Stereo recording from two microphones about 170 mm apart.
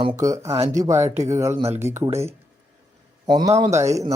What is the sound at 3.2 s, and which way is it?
Speech, 25° right (ahead or behind).